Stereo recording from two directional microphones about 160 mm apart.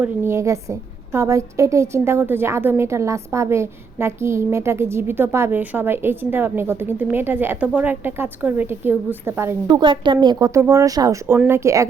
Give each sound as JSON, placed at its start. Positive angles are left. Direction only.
{"t": 0.0, "sound": "a woman's voice", "side_deg": -15}
{"t": 9.6, "sound": "a woman's voice", "side_deg": -30}